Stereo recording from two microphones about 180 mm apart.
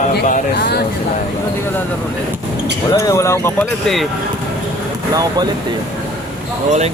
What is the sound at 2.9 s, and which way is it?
Speech, 20° left (ahead or behind).